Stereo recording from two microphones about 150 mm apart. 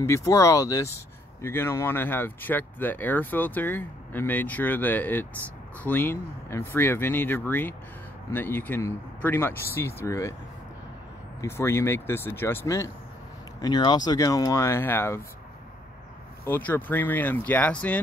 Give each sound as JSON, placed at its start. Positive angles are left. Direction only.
{"t": 0.0, "sound": "speech", "side_deg": 20}
{"t": 11.4, "sound": "speech", "side_deg": 15}
{"t": 16.4, "sound": "speech", "side_deg": 15}